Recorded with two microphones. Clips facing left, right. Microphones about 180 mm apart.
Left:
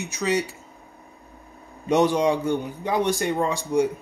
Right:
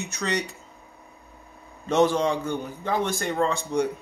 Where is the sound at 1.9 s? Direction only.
15° left (ahead or behind).